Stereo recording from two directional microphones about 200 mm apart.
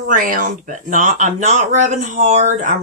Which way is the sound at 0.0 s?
45° right (ahead or behind).